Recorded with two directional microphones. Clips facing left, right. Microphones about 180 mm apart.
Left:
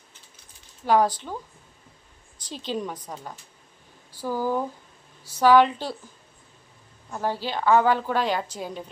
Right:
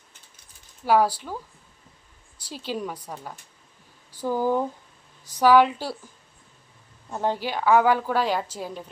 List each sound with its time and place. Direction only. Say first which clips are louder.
0.9 s a woman's voice: even; 10° right (ahead or behind)
2.4 s a woman's voice: left 1 dB; 10° right (ahead or behind)
4.1 s a woman's voice: right 2 dB; 20° right (ahead or behind)
7.1 s a woman's voice: right 2 dB; 20° right (ahead or behind)